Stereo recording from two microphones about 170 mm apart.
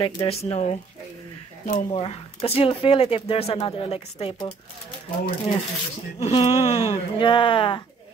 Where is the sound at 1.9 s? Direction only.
35° left (ahead or behind).